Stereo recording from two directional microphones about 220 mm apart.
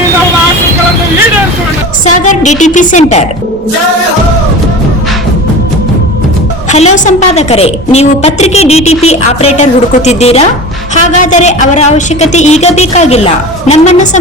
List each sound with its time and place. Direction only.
2.0 s a woman's voice: 35° left (ahead or behind)
6.7 s a woman's voice: 30° left (ahead or behind)